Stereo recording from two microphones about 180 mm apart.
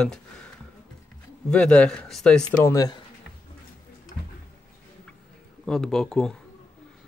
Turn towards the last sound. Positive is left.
turn(degrees=5)  # may be behind; listen again after turning